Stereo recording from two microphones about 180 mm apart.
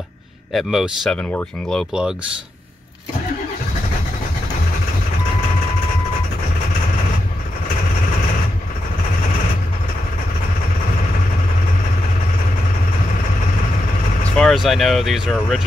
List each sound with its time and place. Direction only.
0.5 s speech: centre (ahead or behind)
14.4 s speech: centre (ahead or behind)